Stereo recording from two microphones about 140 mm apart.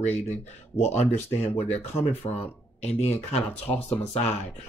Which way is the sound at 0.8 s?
50° left (ahead or behind).